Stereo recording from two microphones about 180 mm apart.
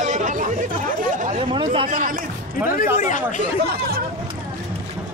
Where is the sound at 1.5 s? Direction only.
30° right (ahead or behind).